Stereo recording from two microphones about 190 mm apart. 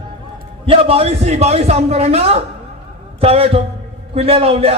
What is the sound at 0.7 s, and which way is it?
A man's voice, 30° right (ahead or behind).